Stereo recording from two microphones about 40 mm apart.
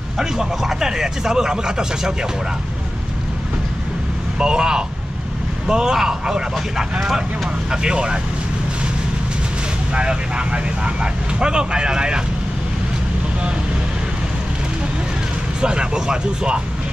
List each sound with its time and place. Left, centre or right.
0.2 s speech: centre
4.4 s speech: centre
9.9 s speech: right
15.6 s speech: right